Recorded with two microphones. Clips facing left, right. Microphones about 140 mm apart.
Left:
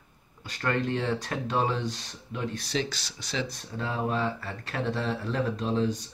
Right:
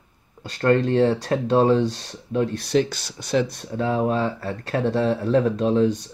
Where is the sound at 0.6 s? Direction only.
45° right (ahead or behind).